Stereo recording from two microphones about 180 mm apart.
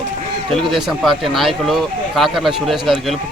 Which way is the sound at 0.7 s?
Centre (ahead or behind).